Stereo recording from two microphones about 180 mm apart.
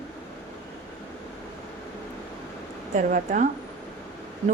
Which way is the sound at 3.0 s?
45° right (ahead or behind).